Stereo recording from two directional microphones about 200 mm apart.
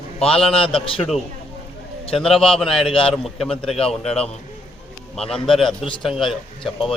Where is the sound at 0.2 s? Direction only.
30° left (ahead or behind).